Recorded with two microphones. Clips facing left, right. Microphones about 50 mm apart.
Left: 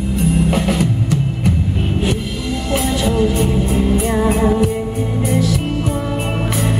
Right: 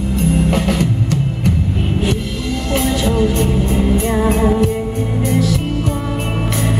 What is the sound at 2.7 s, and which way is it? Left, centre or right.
Music, centre.